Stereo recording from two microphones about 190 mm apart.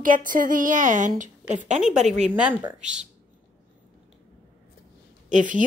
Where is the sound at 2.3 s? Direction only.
10° right (ahead or behind).